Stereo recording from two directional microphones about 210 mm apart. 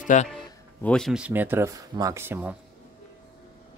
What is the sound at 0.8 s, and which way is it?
Speech, centre (ahead or behind).